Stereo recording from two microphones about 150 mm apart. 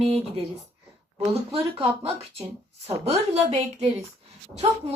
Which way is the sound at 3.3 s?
45° right (ahead or behind).